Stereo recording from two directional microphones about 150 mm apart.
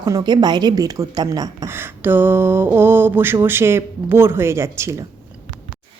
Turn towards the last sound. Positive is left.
turn(degrees=-20)  # may be behind; listen again after turning